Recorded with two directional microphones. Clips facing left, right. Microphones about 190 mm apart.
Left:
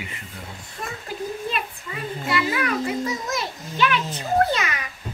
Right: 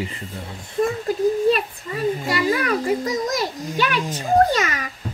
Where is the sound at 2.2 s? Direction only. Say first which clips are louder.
Right 3 dB; 40° right (ahead or behind).